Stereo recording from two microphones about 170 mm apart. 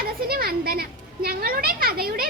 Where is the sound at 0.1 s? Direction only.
60° right (ahead or behind).